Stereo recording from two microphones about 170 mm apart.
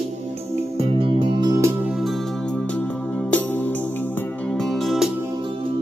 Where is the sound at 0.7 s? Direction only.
30° right (ahead or behind).